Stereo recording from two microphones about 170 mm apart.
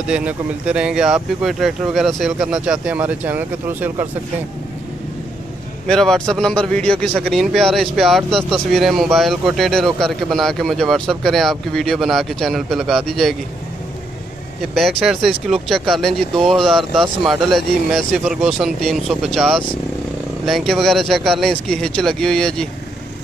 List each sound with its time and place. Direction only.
0.0 s speech: 5° right (ahead or behind)
5.9 s speech: 5° left (ahead or behind)
14.7 s speech: centre (ahead or behind)